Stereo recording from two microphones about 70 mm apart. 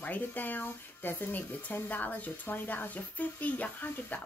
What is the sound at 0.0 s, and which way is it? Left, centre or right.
Speech, left.